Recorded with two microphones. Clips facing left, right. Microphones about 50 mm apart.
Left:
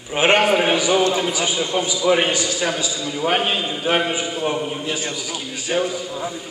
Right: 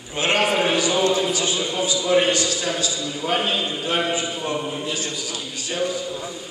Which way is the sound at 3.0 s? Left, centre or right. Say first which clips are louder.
Left 6 dB; left.